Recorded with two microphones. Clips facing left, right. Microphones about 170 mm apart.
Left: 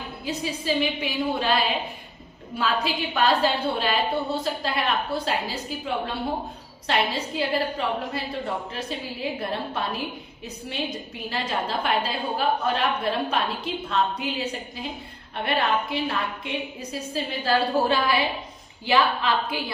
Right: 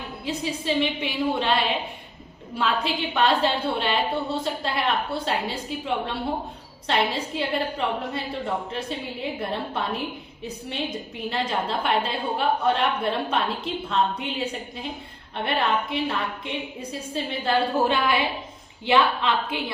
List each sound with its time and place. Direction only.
0.3 s a woman's voice: 25° right (ahead or behind)